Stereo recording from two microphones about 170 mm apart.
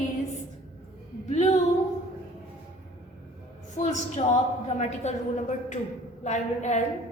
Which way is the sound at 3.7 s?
45° left (ahead or behind).